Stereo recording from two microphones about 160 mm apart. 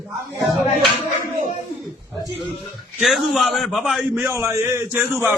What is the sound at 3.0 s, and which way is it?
A man's voice, centre (ahead or behind).